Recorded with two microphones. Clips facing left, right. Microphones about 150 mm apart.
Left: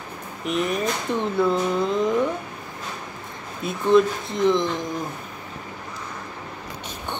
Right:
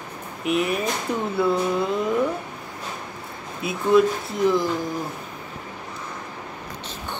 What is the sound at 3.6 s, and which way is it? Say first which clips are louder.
Speech: even; 5° right (ahead or behind).